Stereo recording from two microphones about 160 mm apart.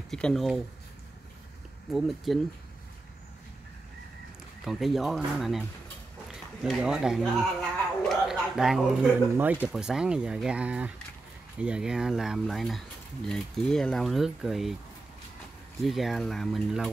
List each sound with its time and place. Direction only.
0.1 s speech: 5° left (ahead or behind)
1.9 s speech: centre (ahead or behind)
4.6 s speech: centre (ahead or behind)
15.8 s speech: centre (ahead or behind)